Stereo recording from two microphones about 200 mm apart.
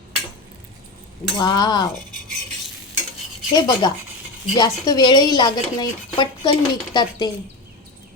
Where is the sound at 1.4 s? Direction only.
20° left (ahead or behind).